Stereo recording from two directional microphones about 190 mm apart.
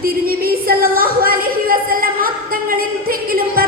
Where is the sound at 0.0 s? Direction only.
50° right (ahead or behind).